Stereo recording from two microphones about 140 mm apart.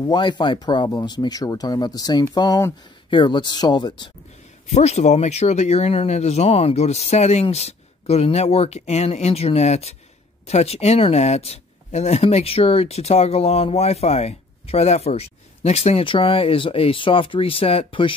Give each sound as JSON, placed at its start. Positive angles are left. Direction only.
{"t": 0.0, "sound": "speech", "side_deg": 30}
{"t": 4.6, "sound": "speech", "side_deg": 50}